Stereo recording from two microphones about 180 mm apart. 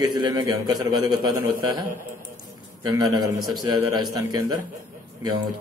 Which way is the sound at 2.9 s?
20° right (ahead or behind).